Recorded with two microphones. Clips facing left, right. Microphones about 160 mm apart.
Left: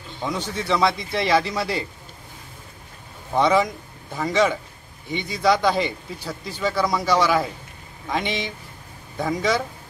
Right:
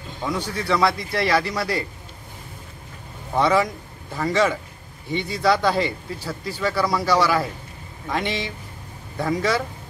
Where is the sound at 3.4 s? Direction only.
15° left (ahead or behind).